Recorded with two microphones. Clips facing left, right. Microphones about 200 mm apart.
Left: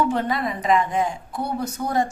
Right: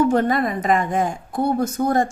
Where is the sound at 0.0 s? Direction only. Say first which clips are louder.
Right 5 dB; 45° right (ahead or behind).